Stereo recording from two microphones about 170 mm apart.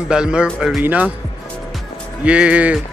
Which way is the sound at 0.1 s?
5° right (ahead or behind).